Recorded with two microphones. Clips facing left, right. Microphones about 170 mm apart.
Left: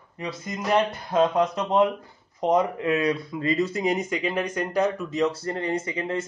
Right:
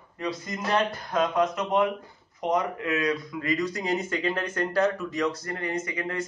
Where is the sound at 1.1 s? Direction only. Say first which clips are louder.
Left 4 dB; 30° left (ahead or behind).